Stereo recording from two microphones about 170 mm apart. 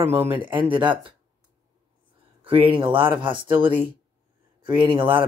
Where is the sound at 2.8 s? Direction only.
30° right (ahead or behind).